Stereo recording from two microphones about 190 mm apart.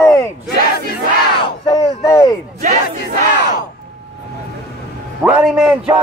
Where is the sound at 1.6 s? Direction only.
20° left (ahead or behind).